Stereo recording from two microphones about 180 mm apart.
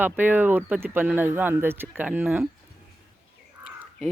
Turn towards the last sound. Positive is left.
turn(degrees=-5)  # may be behind; listen again after turning